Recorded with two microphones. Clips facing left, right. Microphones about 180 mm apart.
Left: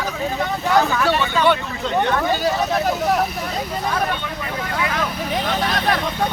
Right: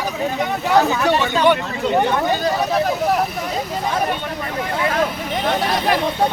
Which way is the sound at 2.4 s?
Centre (ahead or behind).